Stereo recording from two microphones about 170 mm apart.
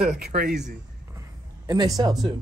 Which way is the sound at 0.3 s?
60° right (ahead or behind).